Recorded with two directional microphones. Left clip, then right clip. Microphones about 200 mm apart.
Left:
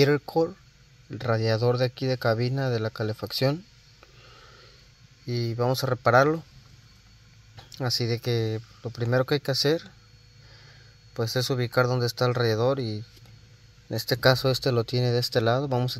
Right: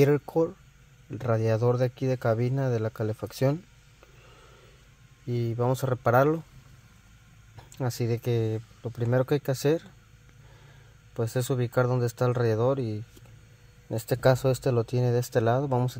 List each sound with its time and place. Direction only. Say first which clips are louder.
0.0 s speech: left 1 dB; 5° right (ahead or behind)
5.2 s speech: left 1 dB; centre (ahead or behind)
7.7 s speech: left 3 dB; 5° left (ahead or behind)
11.1 s speech: left 2 dB; 5° right (ahead or behind)